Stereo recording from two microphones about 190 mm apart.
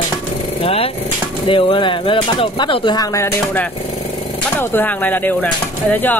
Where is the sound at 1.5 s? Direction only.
25° left (ahead or behind).